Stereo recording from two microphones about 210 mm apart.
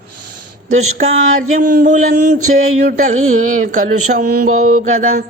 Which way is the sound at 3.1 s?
80° right.